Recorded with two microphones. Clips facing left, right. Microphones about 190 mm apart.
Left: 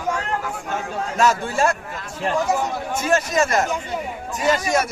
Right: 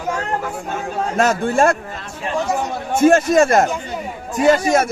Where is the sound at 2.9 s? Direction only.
50° right (ahead or behind).